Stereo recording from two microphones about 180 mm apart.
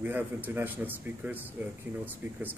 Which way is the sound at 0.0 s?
10° right (ahead or behind).